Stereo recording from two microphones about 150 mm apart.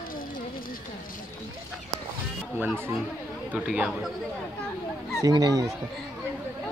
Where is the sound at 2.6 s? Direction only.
15° right (ahead or behind).